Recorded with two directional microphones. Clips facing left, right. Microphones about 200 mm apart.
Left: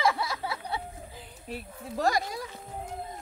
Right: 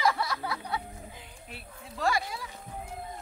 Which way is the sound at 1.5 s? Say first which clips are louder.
Left 10 dB; 40° left (ahead or behind).